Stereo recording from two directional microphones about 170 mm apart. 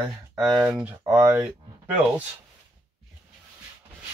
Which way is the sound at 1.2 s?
20° right (ahead or behind).